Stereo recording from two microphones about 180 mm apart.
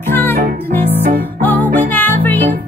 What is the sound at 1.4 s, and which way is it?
Music, 10° left (ahead or behind).